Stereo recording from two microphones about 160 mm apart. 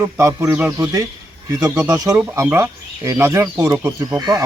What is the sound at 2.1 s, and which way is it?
Speech, 15° right (ahead or behind).